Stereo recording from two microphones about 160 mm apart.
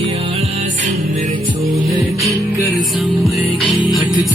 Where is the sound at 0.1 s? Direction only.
40° right (ahead or behind).